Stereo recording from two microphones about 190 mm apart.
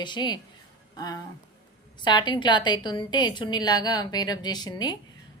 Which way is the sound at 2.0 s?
25° left (ahead or behind).